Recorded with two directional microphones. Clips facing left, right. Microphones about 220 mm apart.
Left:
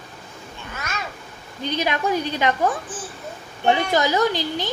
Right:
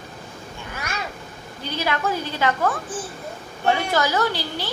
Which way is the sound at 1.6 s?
20° left (ahead or behind).